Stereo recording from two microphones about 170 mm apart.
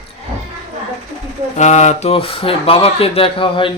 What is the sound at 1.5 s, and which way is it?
Speech, 45° left (ahead or behind).